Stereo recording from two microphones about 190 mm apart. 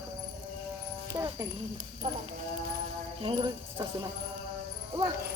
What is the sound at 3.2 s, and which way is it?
Speech, 25° right (ahead or behind).